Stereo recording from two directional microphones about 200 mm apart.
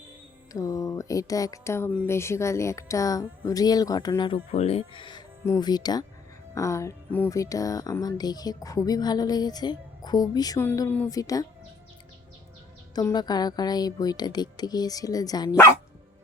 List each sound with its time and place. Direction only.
0.5 s speech: 15° left (ahead or behind)
4.5 s speech: 30° left (ahead or behind)
12.9 s speech: 20° left (ahead or behind)